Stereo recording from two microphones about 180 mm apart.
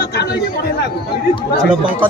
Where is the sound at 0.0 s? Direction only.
60° left (ahead or behind).